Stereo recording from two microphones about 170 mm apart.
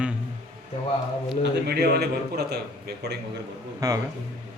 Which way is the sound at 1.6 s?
70° right (ahead or behind).